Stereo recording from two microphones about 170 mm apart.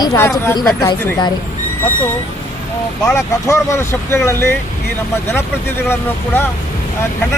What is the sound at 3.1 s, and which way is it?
Speech, 20° left (ahead or behind).